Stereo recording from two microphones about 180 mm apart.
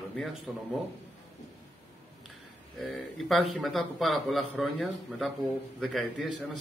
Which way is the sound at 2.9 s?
Centre (ahead or behind).